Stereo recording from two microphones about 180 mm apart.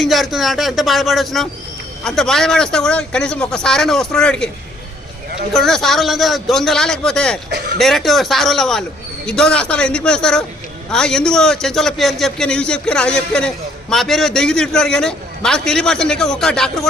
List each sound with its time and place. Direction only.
0.0 s a man's voice: centre (ahead or behind)
5.5 s a man's voice: centre (ahead or behind)
7.5 s speech: 60° right (ahead or behind)
7.8 s a man's voice: centre (ahead or behind)